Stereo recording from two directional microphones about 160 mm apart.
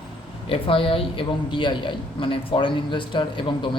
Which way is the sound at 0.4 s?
35° left (ahead or behind).